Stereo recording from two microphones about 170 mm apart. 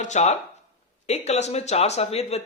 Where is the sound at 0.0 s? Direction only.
40° left (ahead or behind).